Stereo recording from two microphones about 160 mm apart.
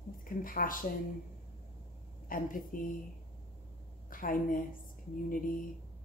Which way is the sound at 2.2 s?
60° left (ahead or behind).